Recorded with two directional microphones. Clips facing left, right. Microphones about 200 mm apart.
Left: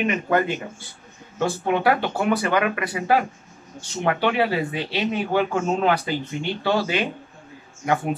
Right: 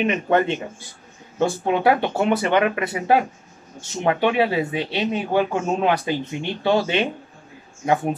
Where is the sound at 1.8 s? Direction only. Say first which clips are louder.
Right 4 dB; 25° right (ahead or behind).